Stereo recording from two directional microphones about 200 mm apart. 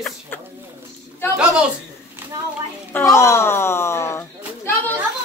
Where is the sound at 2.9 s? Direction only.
10° left (ahead or behind).